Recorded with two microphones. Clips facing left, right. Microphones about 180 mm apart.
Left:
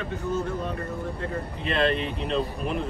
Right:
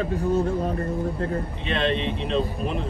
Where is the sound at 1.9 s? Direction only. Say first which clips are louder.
Right 2 dB; 30° right (ahead or behind).